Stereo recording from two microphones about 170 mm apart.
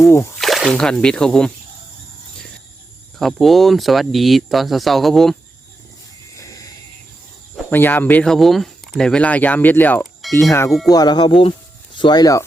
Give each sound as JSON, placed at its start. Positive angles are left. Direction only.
{"t": 0.3, "sound": "speech", "side_deg": 0}
{"t": 3.2, "sound": "speech", "side_deg": 0}
{"t": 6.3, "sound": "music", "side_deg": 20}
{"t": 7.7, "sound": "speech", "side_deg": 10}
{"t": 10.7, "sound": "speech", "side_deg": 0}
{"t": 10.9, "sound": "speech", "side_deg": 25}